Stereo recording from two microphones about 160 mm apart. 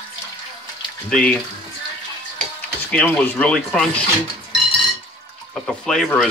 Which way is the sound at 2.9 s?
10° left (ahead or behind).